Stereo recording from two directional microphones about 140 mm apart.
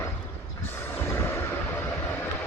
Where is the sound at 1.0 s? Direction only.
20° left (ahead or behind).